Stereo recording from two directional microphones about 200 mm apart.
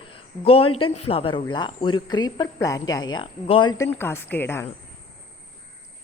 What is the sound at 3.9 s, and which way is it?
Speech, 10° left (ahead or behind).